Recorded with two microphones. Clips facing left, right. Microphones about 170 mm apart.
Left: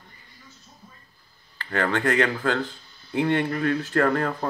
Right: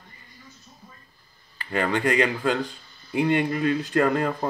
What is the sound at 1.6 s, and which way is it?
Speech, 15° right (ahead or behind).